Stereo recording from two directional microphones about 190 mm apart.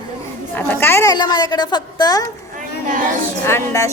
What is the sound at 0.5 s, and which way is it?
A woman's voice, 10° left (ahead or behind).